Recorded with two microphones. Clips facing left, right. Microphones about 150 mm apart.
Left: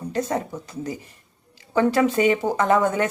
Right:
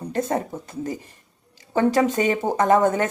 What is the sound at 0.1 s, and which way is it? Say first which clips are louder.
Speech: right 1 dB; 50° right (ahead or behind).